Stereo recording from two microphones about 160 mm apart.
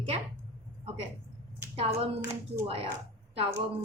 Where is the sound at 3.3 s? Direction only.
40° right (ahead or behind).